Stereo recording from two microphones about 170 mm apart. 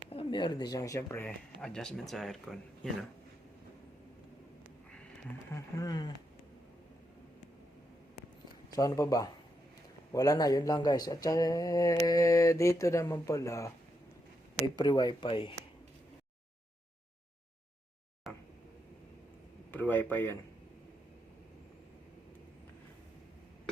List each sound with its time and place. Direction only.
0.1 s speech: 30° left (ahead or behind); by 1.3 s 15° left (ahead or behind)
1.6 s speech: 5° left (ahead or behind)
5.5 s speech: 20° left (ahead or behind)
8.7 s speech: 20° left (ahead or behind)
14.8 s speech: 25° left (ahead or behind)
18.3 s vehicle: centre (ahead or behind)
19.7 s speech: 10° left (ahead or behind)